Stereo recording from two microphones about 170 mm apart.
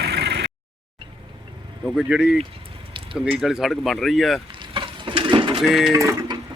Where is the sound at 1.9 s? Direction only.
5° right (ahead or behind).